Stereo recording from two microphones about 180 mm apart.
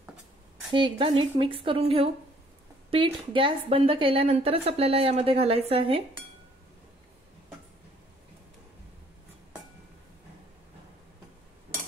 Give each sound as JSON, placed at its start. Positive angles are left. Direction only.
{"t": 0.7, "sound": "a woman's voice", "side_deg": -25}